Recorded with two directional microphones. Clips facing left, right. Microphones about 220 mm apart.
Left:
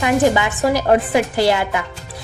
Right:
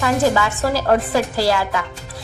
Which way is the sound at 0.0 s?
20° left (ahead or behind).